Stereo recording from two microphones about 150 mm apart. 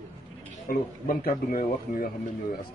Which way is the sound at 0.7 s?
75° left (ahead or behind).